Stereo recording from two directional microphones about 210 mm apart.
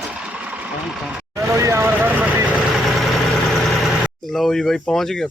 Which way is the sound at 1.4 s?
15° right (ahead or behind).